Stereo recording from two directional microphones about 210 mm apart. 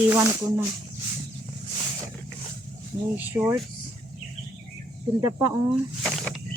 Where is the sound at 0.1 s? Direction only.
10° right (ahead or behind).